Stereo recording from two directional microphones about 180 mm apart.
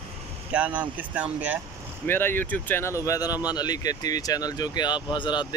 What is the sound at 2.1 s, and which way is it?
Speech, 10° left (ahead or behind).